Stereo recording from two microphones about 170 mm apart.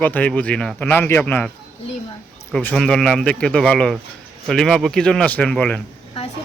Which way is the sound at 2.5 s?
5° left (ahead or behind).